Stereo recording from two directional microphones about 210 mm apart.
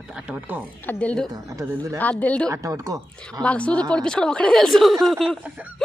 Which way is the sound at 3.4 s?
5° left (ahead or behind).